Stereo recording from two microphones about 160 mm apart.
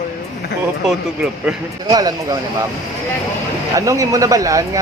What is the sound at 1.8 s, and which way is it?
Speech, 25° right (ahead or behind).